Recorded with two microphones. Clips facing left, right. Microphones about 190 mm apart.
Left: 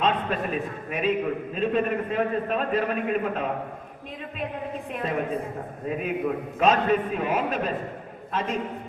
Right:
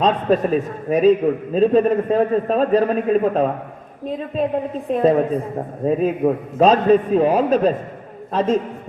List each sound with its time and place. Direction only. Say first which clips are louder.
0.0 s a man's voice: right 8 dB; 35° right (ahead or behind)
4.9 s a man's voice: right 13 dB; 35° right (ahead or behind)